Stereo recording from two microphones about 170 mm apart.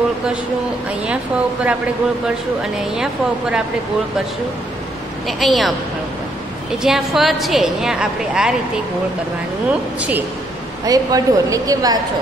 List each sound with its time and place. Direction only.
1.0 s a woman's voice: 5° right (ahead or behind)
5.4 s a woman's voice: centre (ahead or behind)
6.8 s a woman's voice: centre (ahead or behind)
9.9 s speech: 10° right (ahead or behind)
10.9 s speech: 20° right (ahead or behind)